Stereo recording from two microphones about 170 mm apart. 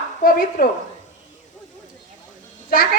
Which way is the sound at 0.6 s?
55° left (ahead or behind).